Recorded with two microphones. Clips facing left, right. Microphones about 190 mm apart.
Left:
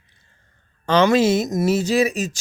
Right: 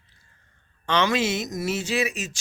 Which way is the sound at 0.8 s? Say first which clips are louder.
Left 7 dB; 40° left (ahead or behind).